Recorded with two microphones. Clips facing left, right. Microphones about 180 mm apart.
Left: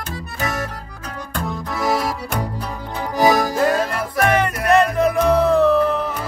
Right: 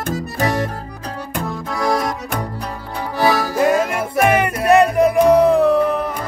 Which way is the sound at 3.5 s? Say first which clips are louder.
Right 2 dB; 15° right (ahead or behind).